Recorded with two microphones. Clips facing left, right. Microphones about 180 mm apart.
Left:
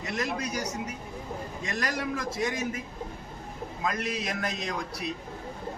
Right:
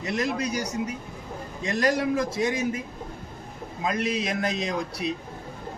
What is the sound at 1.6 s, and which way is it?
A man's voice, 30° right (ahead or behind).